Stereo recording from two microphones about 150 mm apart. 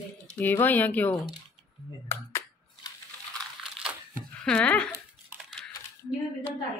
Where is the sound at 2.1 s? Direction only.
15° left (ahead or behind).